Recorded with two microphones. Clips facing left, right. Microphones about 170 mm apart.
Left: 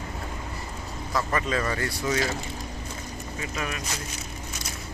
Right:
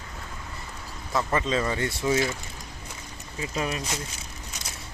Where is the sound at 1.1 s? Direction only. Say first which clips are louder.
Right 1 dB; 25° right (ahead or behind).